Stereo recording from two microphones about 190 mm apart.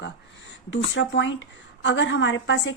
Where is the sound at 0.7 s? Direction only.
80° left.